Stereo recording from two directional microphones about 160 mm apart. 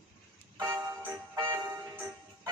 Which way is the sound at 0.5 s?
15° right (ahead or behind).